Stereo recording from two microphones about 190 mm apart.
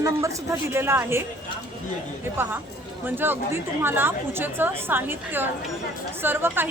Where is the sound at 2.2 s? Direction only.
10° right (ahead or behind).